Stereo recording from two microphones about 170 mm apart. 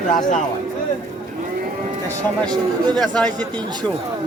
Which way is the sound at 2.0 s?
25° right (ahead or behind).